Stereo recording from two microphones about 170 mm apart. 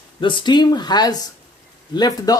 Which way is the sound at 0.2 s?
30° left (ahead or behind).